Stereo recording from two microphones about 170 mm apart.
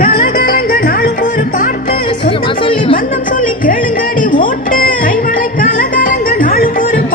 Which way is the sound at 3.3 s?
50° left (ahead or behind).